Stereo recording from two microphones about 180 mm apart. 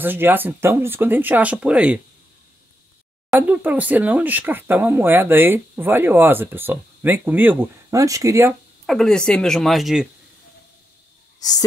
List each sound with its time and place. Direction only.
0.0 s speech: 10° right (ahead or behind)
3.3 s speech: 10° right (ahead or behind)
8.8 s speech: centre (ahead or behind)
11.3 s speech: 20° left (ahead or behind)